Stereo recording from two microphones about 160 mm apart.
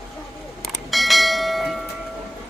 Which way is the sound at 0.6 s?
Centre (ahead or behind).